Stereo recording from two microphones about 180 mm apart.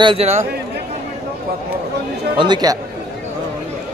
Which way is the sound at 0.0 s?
30° right (ahead or behind).